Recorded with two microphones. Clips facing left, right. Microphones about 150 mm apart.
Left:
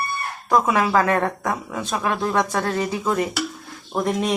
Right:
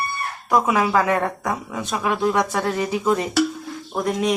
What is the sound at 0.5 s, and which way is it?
A woman's voice, 10° right (ahead or behind).